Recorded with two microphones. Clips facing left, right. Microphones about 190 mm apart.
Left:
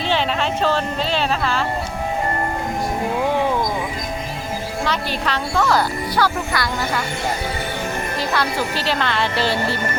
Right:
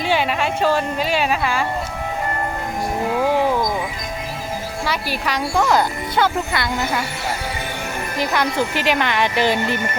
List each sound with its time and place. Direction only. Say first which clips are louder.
0.0 s speech: right 1 dB; 10° right (ahead or behind)
4.9 s speech: even; 10° right (ahead or behind)
8.2 s speech: right 3 dB; 15° right (ahead or behind)